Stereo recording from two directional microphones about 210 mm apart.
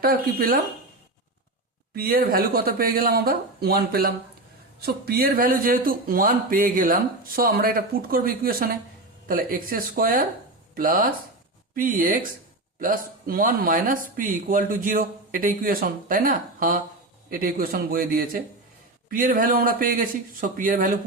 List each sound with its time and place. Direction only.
0.0 s speech: 45° right (ahead or behind)
2.0 s speech: 45° right (ahead or behind)